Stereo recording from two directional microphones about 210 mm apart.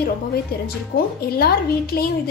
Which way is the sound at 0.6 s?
45° left (ahead or behind).